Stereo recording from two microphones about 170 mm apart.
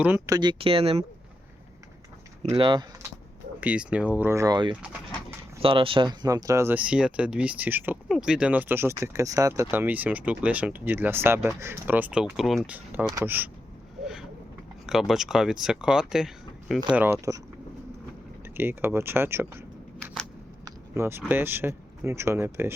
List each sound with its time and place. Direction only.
0.3 s speech: 25° right (ahead or behind)
2.5 s speech: 25° right (ahead or behind)
3.6 s speech: 10° right (ahead or behind); by 4.7 s 25° right (ahead or behind)
4.7 s speech: 10° right (ahead or behind)
5.6 s speech: 30° right (ahead or behind); by 13.5 s 10° right (ahead or behind)
14.0 s boat: centre (ahead or behind)
14.8 s speech: centre (ahead or behind)
18.4 s speech: 10° right (ahead or behind)